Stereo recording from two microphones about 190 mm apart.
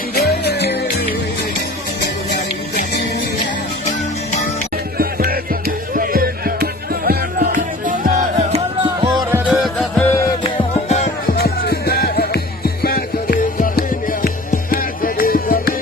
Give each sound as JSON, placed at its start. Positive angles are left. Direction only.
{"t": 0.1, "sound": "music", "side_deg": 60}
{"t": 2.7, "sound": "music", "side_deg": 55}
{"t": 4.9, "sound": "music", "side_deg": -50}
{"t": 8.5, "sound": "music", "side_deg": -30}
{"t": 9.5, "sound": "music", "side_deg": 5}
{"t": 10.4, "sound": "music", "side_deg": 25}
{"t": 11.3, "sound": "music", "side_deg": 55}